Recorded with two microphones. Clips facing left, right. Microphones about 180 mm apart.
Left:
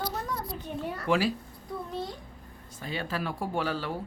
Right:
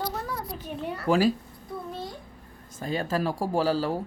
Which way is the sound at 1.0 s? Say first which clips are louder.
Right 4 dB; 40° right (ahead or behind).